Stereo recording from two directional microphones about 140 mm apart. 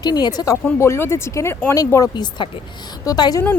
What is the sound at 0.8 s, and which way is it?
Speech, 20° left (ahead or behind).